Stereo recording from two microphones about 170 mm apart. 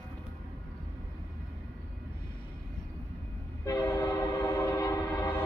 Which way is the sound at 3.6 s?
15° left (ahead or behind).